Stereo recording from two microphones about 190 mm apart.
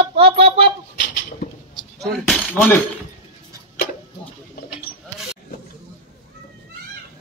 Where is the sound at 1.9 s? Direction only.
Centre (ahead or behind).